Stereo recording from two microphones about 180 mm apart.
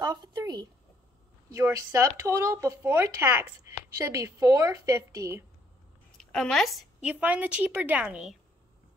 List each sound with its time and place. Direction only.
0.0 s a sound: 20° right (ahead or behind)
1.5 s a woman's voice: 15° right (ahead or behind)
6.1 s a woman's voice: 5° left (ahead or behind)